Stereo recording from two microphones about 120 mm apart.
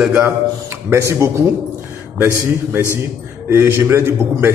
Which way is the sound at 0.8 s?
25° right (ahead or behind).